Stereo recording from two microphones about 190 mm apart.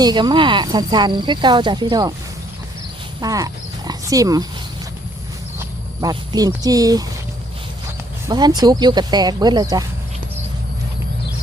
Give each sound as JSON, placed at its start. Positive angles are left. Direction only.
{"t": 0.0, "sound": "speech", "side_deg": -20}
{"t": 3.2, "sound": "wild animals", "side_deg": -20}
{"t": 6.0, "sound": "speech", "side_deg": -20}